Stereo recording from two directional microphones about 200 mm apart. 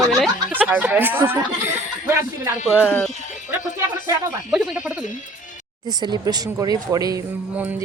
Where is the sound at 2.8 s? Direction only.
10° left (ahead or behind).